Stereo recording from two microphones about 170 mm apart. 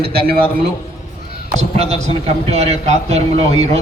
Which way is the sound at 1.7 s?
40° right (ahead or behind).